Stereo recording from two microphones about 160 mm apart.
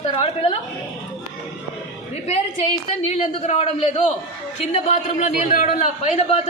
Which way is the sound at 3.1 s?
40° left (ahead or behind).